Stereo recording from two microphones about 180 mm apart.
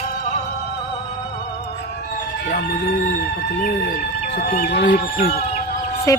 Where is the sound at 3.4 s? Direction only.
65° left (ahead or behind).